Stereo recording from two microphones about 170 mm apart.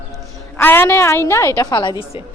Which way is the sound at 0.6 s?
10° left (ahead or behind).